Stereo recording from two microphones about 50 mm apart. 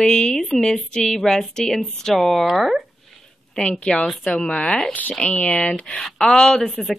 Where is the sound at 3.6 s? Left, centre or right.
Centre.